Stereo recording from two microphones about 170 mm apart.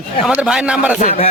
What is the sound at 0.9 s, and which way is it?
Speech, 45° left (ahead or behind).